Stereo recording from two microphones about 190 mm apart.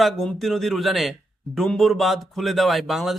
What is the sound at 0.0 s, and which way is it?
A man's voice, centre (ahead or behind).